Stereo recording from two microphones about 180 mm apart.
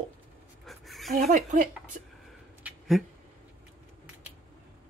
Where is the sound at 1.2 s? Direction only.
45° right (ahead or behind).